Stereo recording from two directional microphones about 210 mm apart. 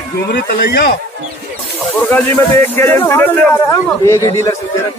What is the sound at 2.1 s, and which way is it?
Speech, 10° left (ahead or behind).